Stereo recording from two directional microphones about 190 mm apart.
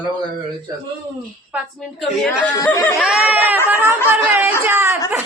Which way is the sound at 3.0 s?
5° right (ahead or behind).